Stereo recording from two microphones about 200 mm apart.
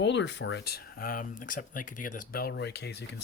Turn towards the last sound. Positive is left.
turn(degrees=55)  # may be behind; listen again after turning